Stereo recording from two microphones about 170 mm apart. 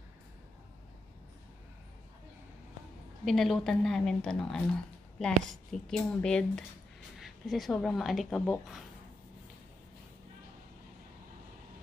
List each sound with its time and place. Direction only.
3.3 s speech: centre (ahead or behind)